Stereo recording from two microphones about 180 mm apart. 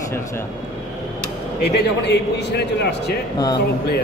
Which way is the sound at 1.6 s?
70° left (ahead or behind).